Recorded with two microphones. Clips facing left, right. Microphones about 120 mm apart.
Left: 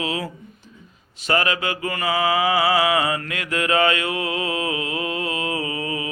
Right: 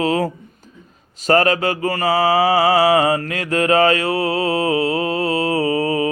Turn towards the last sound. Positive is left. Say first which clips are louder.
# right 9 dB
turn(degrees=-40)  # may be behind; listen again after turning